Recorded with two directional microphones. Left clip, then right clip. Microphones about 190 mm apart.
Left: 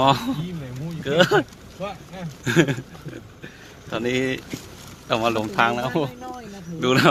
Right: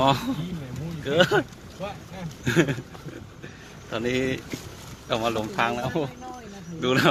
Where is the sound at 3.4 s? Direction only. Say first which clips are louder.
Left 2 dB; 10° left (ahead or behind).